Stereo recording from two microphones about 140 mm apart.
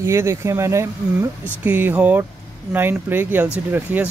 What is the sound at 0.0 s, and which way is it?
Speech, 20° right (ahead or behind).